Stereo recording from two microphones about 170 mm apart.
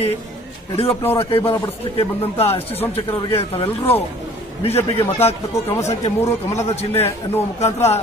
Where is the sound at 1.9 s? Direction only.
35° left (ahead or behind).